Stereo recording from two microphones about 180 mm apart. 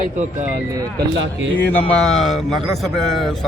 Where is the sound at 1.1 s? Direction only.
90° right.